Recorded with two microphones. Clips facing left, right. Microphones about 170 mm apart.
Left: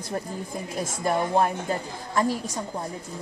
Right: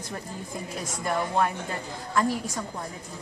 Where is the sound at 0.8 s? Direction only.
30° left (ahead or behind).